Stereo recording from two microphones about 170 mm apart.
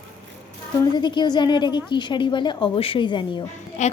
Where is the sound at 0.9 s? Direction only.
25° left (ahead or behind).